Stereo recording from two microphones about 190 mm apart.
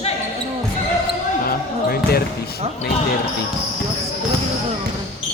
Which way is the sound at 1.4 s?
50° left (ahead or behind).